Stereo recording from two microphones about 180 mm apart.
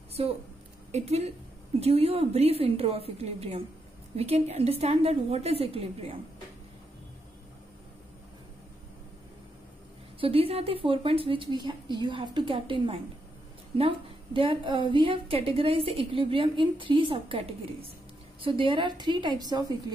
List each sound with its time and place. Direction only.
0.2 s a woman's voice: 30° right (ahead or behind)
10.2 s a woman's voice: 30° right (ahead or behind)